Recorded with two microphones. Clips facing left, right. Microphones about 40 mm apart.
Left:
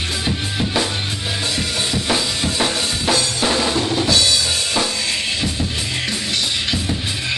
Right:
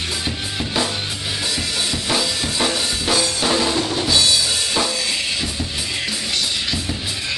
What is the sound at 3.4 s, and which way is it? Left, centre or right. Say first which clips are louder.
Drum: left 1 dB; centre.